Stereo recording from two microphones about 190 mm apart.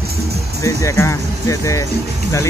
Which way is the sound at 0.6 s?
15° left (ahead or behind).